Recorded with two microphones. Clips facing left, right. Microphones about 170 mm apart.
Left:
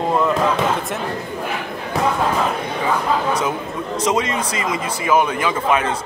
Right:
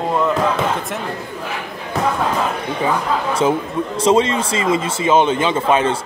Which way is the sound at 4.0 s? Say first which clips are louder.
Right 5 dB; 30° right (ahead or behind).